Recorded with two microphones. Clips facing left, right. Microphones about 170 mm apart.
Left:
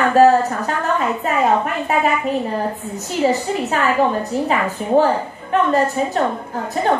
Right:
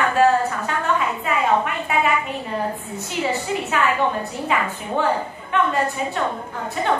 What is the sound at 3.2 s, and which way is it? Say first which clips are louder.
Speech: left 6 dB; 40° left (ahead or behind).